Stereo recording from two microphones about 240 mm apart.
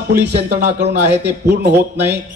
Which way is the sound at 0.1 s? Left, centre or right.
Right.